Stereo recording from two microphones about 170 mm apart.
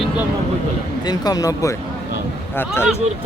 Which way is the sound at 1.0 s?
25° left (ahead or behind).